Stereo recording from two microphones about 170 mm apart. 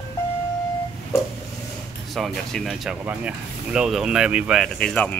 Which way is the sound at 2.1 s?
Centre (ahead or behind).